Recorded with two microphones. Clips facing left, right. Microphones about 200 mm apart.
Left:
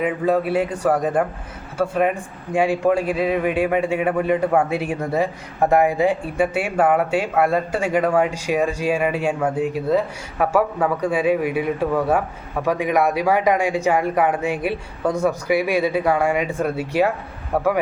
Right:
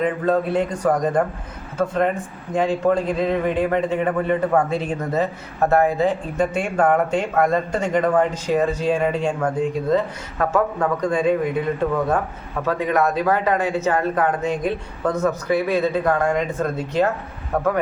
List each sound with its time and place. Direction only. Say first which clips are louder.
0.0 s a man's voice: even; 10° left (ahead or behind)